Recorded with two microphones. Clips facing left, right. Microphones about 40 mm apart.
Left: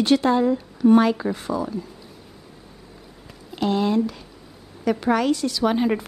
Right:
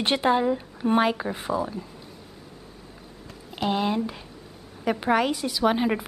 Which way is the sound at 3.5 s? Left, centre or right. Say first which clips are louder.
Left 4 dB; centre.